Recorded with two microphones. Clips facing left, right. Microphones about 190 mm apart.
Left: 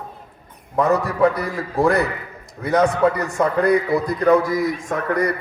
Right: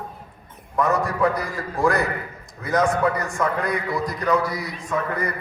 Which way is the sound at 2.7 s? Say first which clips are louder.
Left 3 dB; 60° left (ahead or behind).